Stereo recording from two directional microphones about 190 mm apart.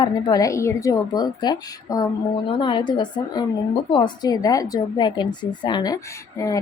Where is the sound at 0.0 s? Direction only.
20° left (ahead or behind).